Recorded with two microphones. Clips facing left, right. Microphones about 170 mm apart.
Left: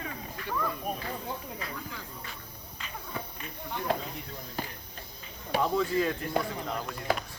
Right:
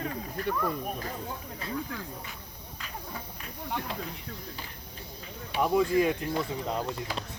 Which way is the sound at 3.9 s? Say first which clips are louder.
Left 7 dB; 50° left (ahead or behind).